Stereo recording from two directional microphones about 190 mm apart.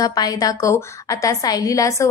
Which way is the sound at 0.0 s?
20° left (ahead or behind).